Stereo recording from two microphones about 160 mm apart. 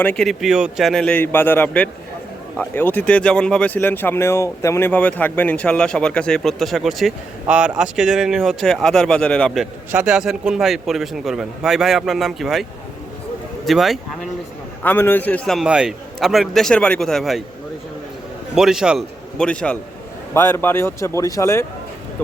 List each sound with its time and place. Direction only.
0.0 s a man's voice: 5° left (ahead or behind)
9.9 s a man's voice: 10° right (ahead or behind)
13.7 s a man's voice: centre (ahead or behind)
14.8 s a man's voice: 15° left (ahead or behind)
18.5 s a man's voice: 5° right (ahead or behind); by 21.7 s 15° left (ahead or behind)